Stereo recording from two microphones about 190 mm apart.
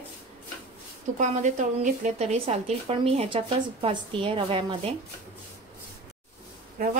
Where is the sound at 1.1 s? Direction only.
40° right (ahead or behind).